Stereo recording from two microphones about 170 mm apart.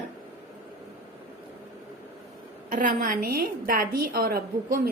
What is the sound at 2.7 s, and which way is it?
A woman's voice, 55° right (ahead or behind).